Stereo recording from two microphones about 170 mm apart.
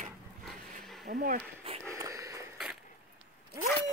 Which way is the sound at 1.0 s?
55° right (ahead or behind).